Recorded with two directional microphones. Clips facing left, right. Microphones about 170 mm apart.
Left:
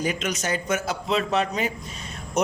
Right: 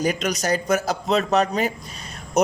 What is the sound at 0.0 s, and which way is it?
A man's voice, 40° right (ahead or behind).